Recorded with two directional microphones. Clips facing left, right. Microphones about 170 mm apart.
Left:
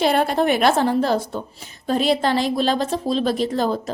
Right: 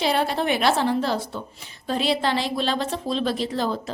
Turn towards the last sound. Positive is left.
turn(degrees=45)  # may be behind; listen again after turning